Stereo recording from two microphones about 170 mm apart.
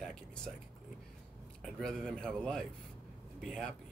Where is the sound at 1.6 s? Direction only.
5° left (ahead or behind).